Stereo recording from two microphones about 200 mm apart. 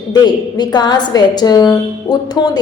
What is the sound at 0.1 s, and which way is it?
A woman's voice, 20° left (ahead or behind).